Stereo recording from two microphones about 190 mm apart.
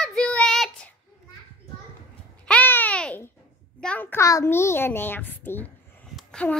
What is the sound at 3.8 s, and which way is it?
A child's voice, 10° left (ahead or behind).